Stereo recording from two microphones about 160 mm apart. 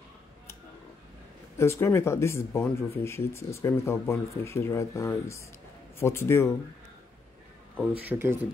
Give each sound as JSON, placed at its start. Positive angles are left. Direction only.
{"t": 1.6, "sound": "speech", "side_deg": 15}
{"t": 8.0, "sound": "speech", "side_deg": -15}